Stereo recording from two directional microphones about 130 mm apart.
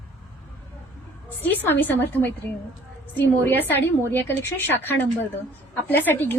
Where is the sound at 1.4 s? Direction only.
15° left (ahead or behind).